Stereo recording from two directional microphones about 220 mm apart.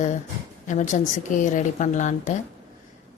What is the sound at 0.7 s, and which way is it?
A woman's voice, 35° left (ahead or behind).